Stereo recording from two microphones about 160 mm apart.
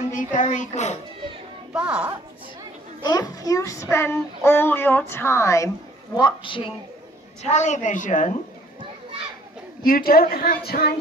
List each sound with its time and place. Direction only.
0.1 s a woman's voice: 55° left (ahead or behind)
1.7 s speech: 5° right (ahead or behind)
3.0 s a child's voice: 25° left (ahead or behind)
6.1 s speech: 30° left (ahead or behind)
7.4 s a woman's voice: 45° left (ahead or behind)
9.8 s speech: 65° left (ahead or behind)